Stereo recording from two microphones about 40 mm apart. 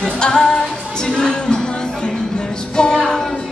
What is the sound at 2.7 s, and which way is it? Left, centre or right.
Music, left.